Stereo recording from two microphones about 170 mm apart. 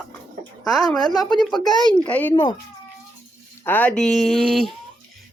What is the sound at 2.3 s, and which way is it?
Speech, 25° left (ahead or behind).